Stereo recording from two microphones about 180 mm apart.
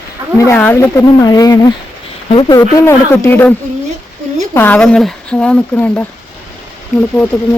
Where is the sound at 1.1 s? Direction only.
20° left (ahead or behind).